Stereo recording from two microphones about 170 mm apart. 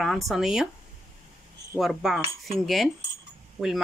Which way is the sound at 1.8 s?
Centre (ahead or behind).